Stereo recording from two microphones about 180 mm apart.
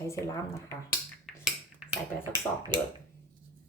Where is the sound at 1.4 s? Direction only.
5° right (ahead or behind).